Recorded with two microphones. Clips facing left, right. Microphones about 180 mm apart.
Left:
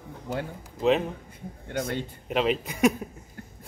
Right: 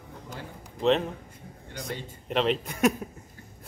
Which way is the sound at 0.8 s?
5° left (ahead or behind).